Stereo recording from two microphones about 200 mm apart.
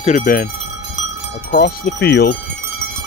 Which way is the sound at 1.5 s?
50° left (ahead or behind).